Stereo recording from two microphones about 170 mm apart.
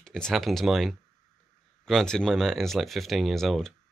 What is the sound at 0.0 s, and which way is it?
Speech, 5° left (ahead or behind).